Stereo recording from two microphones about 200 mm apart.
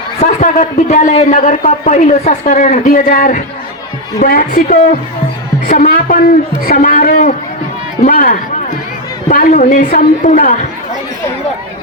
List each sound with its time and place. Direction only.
0.2 s a man's voice: 40° left (ahead or behind)